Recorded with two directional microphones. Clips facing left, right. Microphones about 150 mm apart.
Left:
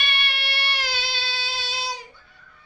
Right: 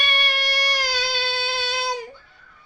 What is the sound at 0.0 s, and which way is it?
Music, 40° right (ahead or behind).